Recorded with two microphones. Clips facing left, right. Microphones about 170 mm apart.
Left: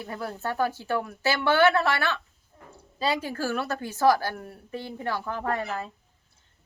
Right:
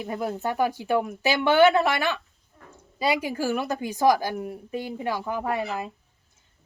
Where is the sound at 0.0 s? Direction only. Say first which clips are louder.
Right 4 dB; 15° right (ahead or behind).